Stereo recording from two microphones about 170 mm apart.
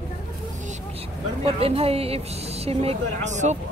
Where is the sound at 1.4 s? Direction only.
35° right (ahead or behind).